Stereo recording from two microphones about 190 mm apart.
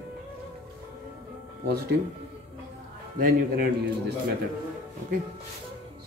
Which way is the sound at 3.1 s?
50° right (ahead or behind).